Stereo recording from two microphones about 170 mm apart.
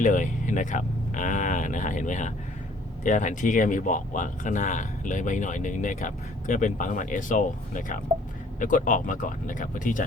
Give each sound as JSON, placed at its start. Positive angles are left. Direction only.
{"t": 0.0, "sound": "speech", "side_deg": 50}